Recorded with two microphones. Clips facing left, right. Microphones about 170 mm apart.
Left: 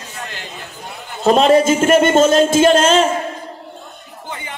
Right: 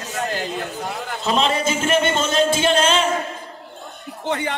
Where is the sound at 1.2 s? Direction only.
50° left (ahead or behind).